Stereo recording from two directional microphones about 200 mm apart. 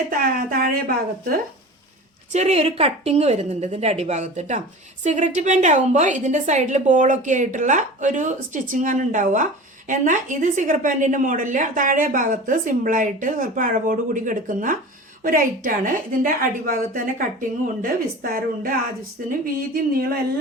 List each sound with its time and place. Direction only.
0.1 s a woman's voice: 45° right (ahead or behind)
2.3 s a woman's voice: 35° right (ahead or behind)